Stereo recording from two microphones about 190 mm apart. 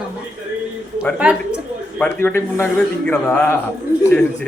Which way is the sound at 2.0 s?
10° left (ahead or behind).